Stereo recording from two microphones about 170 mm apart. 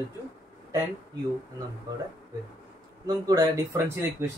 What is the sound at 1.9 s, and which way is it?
Speech, 25° right (ahead or behind).